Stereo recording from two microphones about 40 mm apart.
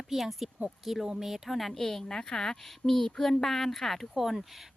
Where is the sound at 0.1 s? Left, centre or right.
Centre.